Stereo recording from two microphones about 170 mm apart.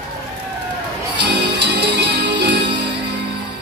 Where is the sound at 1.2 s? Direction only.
90° right.